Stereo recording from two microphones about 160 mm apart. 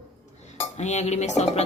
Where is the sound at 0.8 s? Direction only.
45° left (ahead or behind).